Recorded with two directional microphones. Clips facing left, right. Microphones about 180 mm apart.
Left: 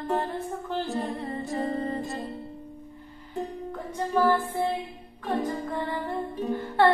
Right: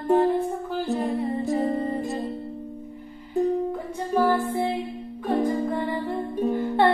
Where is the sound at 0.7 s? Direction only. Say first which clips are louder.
Right 2 dB; centre (ahead or behind).